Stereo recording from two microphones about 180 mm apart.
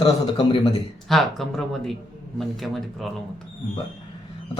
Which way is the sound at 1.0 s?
Centre (ahead or behind).